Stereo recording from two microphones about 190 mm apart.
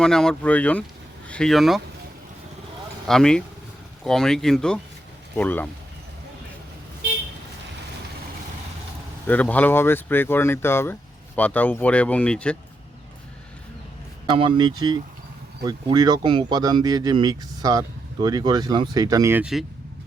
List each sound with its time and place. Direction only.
0.0 s speech: 5° left (ahead or behind)
3.1 s speech: 5° left (ahead or behind)
9.2 s speech: 10° left (ahead or behind)
14.3 s speech: 25° right (ahead or behind); by 19.6 s 5° right (ahead or behind)